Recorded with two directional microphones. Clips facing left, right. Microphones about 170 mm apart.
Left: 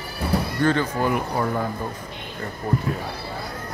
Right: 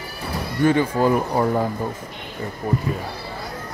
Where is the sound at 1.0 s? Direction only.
35° right (ahead or behind).